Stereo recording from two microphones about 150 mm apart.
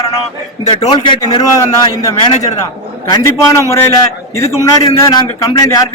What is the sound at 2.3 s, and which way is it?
Speech, 50° left (ahead or behind).